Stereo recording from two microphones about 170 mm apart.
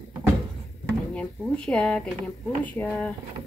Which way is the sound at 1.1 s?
5° left (ahead or behind).